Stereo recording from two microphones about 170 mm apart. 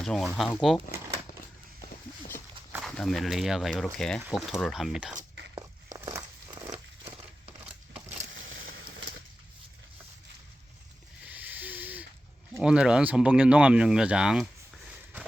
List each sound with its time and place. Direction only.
0.0 s speech: centre (ahead or behind)
2.8 s speech: centre (ahead or behind)
5.5 s a sound: 20° right (ahead or behind)
6.7 s a sound: 35° right (ahead or behind)
11.2 s owl: 10° right (ahead or behind)
12.5 s speech: 5° right (ahead or behind)